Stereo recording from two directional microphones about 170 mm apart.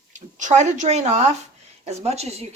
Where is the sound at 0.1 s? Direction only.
45° right (ahead or behind).